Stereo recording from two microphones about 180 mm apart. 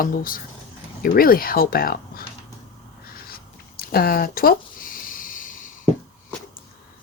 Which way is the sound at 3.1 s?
55° left (ahead or behind).